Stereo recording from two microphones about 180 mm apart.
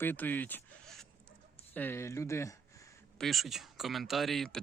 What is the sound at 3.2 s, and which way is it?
Speech, centre (ahead or behind).